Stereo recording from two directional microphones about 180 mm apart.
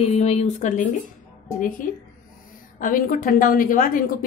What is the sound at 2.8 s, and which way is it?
A woman's voice, 50° left (ahead or behind).